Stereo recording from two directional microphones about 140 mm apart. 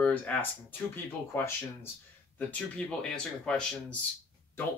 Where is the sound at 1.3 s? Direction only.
15° left (ahead or behind).